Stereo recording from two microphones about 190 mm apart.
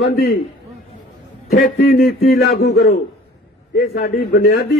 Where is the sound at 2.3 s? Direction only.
60° left (ahead or behind).